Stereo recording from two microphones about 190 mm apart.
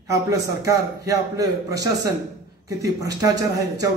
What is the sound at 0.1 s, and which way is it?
A man's voice, 15° right (ahead or behind).